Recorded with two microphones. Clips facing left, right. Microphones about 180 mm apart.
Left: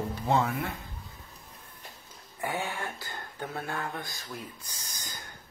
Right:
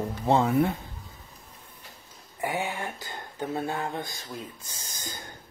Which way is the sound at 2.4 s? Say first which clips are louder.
Right 3 dB; 15° right (ahead or behind).